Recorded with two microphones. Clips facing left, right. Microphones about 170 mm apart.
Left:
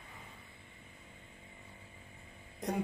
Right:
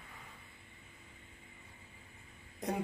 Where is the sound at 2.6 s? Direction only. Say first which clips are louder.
Even; centre (ahead or behind).